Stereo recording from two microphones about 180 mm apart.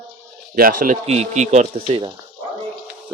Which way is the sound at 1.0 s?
35° right (ahead or behind).